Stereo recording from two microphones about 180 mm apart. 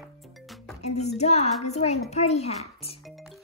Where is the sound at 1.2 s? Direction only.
40° left (ahead or behind).